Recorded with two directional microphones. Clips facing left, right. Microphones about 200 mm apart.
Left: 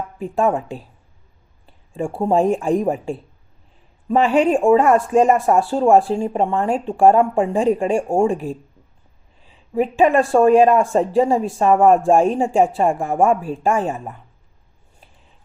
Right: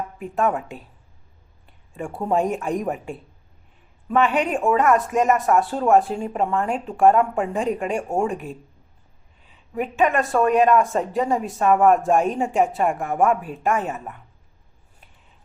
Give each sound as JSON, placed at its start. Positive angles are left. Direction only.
{"t": 0.2, "sound": "speech", "side_deg": 30}
{"t": 9.7, "sound": "speech", "side_deg": 30}